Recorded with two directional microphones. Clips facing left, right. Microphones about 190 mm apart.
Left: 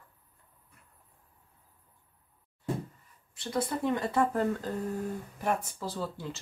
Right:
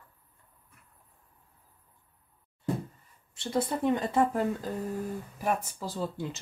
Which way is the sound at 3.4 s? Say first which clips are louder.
Right 2 dB; 25° right (ahead or behind).